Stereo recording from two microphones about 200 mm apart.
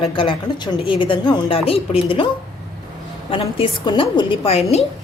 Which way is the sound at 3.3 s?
25° left (ahead or behind).